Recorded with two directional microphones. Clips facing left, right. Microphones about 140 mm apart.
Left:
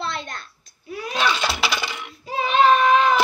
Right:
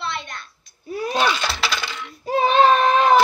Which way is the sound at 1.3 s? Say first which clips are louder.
Left 1 dB; 5° left (ahead or behind).